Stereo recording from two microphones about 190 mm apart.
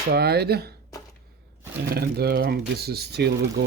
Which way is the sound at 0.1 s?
60° right (ahead or behind).